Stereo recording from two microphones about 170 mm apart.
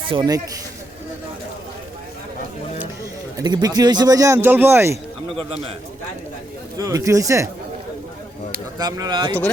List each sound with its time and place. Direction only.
0.1 s speech: 25° right (ahead or behind)
3.3 s speech: 25° right (ahead or behind)
5.3 s a man's voice: 35° right (ahead or behind)
6.7 s speech: 20° right (ahead or behind)
8.8 s speech: 20° right (ahead or behind)